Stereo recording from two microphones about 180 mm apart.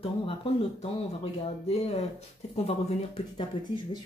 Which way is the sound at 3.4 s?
25° left (ahead or behind).